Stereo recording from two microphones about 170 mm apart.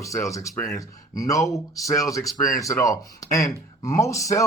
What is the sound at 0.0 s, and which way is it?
Speech, 20° left (ahead or behind).